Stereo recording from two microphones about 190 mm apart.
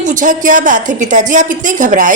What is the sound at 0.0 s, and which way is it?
A woman's voice, 40° right (ahead or behind).